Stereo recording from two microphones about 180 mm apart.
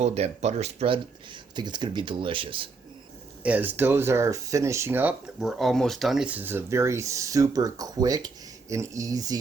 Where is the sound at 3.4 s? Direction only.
10° right (ahead or behind).